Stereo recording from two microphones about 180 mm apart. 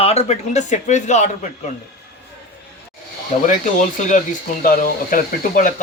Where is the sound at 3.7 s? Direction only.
45° left (ahead or behind).